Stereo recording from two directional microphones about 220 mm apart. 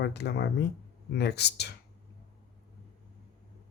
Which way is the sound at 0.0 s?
50° left (ahead or behind).